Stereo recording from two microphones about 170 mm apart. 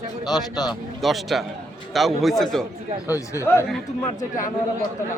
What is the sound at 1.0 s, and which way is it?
Speech, centre (ahead or behind).